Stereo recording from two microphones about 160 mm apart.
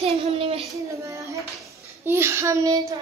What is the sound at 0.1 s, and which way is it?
Child singing, 35° right (ahead or behind).